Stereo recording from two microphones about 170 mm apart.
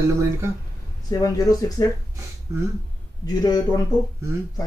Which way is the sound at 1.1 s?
20° left (ahead or behind).